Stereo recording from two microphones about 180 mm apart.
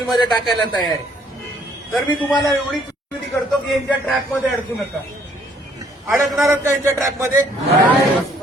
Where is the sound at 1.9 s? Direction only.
Centre (ahead or behind).